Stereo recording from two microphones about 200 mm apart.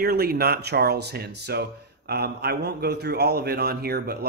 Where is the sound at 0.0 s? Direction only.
50° right (ahead or behind).